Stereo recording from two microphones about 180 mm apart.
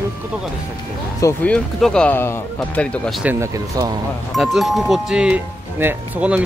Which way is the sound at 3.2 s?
15° right (ahead or behind).